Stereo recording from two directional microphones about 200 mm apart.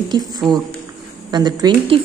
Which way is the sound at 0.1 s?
20° right (ahead or behind).